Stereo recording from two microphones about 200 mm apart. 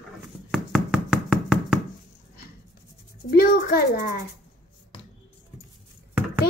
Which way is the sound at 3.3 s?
50° left (ahead or behind).